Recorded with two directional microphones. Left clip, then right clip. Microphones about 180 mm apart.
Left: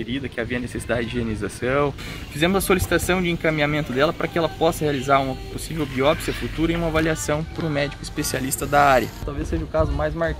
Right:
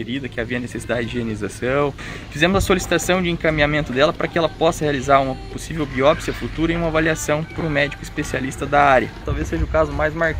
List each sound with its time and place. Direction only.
0.0 s speech: 10° right (ahead or behind)
7.6 s speech: centre (ahead or behind)
9.4 s speech: 15° right (ahead or behind)